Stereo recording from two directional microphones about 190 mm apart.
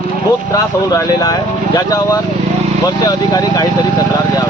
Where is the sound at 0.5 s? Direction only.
20° left (ahead or behind).